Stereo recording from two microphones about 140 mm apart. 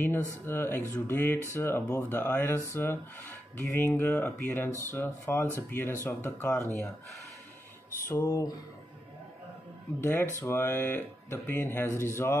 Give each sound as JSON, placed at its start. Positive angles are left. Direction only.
{"t": 0.5, "sound": "speech", "side_deg": 15}
{"t": 8.0, "sound": "speech", "side_deg": 20}
{"t": 9.9, "sound": "speech", "side_deg": 15}